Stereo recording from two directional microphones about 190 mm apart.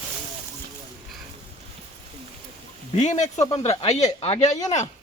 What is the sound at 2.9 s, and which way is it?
Speech, 35° left (ahead or behind).